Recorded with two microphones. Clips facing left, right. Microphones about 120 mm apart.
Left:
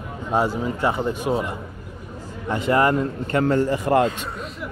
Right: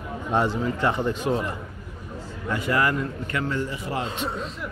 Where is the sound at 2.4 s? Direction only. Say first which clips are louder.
Left 5 dB; 25° left (ahead or behind); by 4.1 s 50° left (ahead or behind).